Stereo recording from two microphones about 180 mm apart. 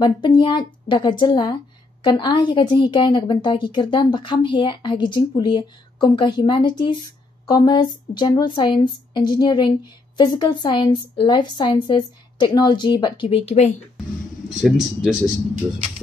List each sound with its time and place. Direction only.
0.0 s a woman's voice: 25° left (ahead or behind)
14.5 s speech: 5° right (ahead or behind)